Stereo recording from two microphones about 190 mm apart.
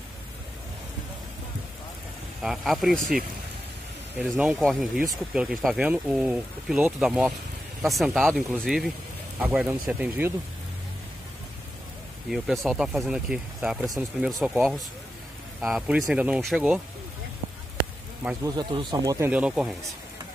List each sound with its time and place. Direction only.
2.4 s speech: centre (ahead or behind)
4.2 s speech: 5° right (ahead or behind)
12.3 s speech: centre (ahead or behind)
18.4 s speech: 25° right (ahead or behind); by 19.7 s 5° right (ahead or behind)